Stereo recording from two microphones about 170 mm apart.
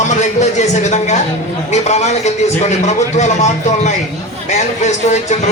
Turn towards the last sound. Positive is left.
turn(degrees=45)  # may be behind; listen again after turning